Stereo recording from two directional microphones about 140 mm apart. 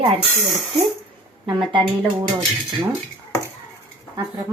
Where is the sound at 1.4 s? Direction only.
35° right (ahead or behind).